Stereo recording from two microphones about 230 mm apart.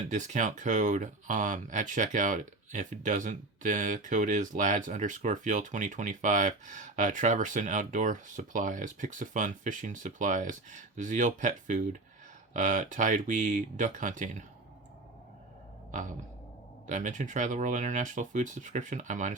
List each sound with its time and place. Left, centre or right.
0.1 s speech: right
15.9 s throat clearing: right
16.8 s speech: right